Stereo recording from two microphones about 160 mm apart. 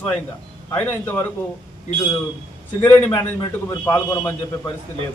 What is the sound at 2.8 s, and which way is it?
Speech, 15° left (ahead or behind).